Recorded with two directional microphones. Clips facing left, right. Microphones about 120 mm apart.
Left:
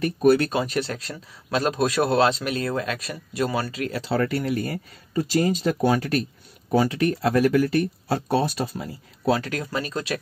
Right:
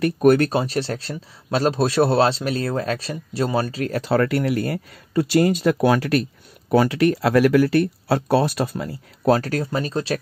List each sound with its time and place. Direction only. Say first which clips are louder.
0.2 s speech: right 2 dB; 50° right (ahead or behind)
0.5 s a man's voice: right 3 dB; 30° right (ahead or behind)
3.7 s a man's voice: right 4 dB; 35° right (ahead or behind)
4.0 s speech: right 5 dB; 65° right (ahead or behind)
9.3 s a man's voice: right 5 dB; 40° right (ahead or behind)